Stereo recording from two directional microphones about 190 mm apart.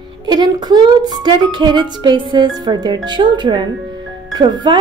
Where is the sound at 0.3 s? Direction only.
20° right (ahead or behind).